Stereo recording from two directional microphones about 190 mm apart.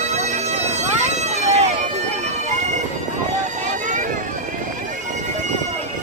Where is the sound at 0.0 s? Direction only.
35° right (ahead or behind).